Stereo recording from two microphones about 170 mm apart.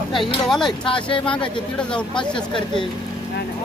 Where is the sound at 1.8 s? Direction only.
5° left (ahead or behind).